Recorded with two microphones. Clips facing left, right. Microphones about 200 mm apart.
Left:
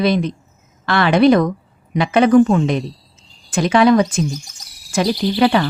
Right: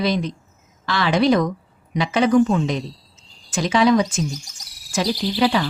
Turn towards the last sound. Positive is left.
turn(degrees=60)  # may be behind; listen again after turning